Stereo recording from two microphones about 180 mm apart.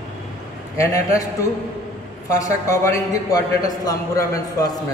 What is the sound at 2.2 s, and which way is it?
A man's voice, 20° left (ahead or behind).